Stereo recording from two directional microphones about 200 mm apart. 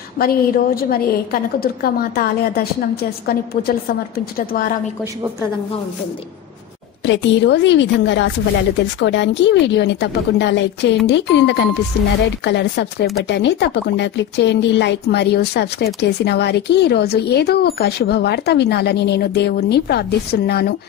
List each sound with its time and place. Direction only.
0.2 s a woman's voice: 45° left (ahead or behind)
7.1 s speech: 60° left (ahead or behind)